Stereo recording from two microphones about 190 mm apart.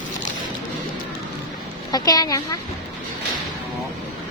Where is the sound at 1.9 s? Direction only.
20° left (ahead or behind).